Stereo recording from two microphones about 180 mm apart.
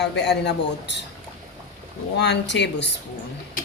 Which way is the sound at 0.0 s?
70° left (ahead or behind).